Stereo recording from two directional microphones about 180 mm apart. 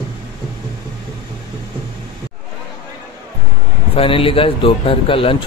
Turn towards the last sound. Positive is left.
turn(degrees=30)  # may be behind; listen again after turning